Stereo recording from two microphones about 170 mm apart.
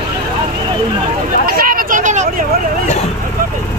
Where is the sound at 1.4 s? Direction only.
60° right (ahead or behind).